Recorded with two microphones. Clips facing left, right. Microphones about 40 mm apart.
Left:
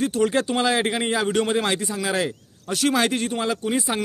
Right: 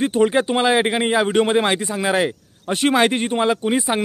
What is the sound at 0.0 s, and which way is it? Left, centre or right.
A man's voice, right.